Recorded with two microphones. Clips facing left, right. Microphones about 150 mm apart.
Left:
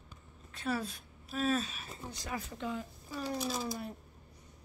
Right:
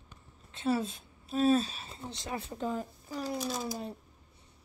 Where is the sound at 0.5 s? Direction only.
25° right (ahead or behind).